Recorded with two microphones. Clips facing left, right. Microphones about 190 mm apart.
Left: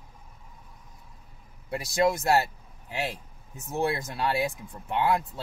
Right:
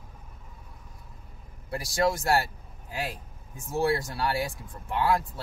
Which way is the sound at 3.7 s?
20° left (ahead or behind).